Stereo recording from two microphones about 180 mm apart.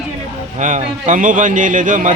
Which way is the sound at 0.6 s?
45° right (ahead or behind).